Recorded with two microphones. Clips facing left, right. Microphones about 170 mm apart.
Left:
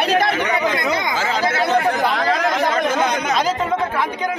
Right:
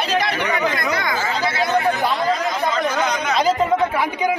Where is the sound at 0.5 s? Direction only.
25° left (ahead or behind).